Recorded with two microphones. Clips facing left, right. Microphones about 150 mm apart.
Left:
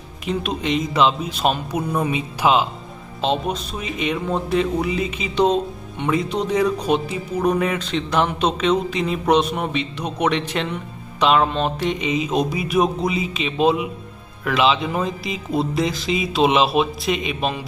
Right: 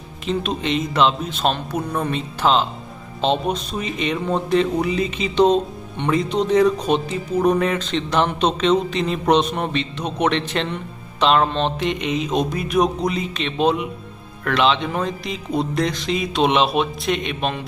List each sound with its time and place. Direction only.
0.3 s speech: 10° left (ahead or behind)